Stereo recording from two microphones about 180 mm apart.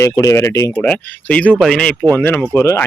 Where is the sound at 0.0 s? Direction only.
15° left (ahead or behind).